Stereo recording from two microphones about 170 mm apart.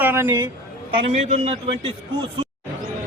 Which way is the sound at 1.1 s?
40° right (ahead or behind).